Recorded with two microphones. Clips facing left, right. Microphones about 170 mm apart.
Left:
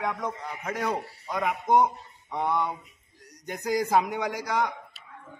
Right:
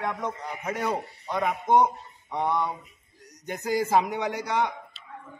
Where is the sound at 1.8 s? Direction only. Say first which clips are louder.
Right 1 dB; 15° right (ahead or behind).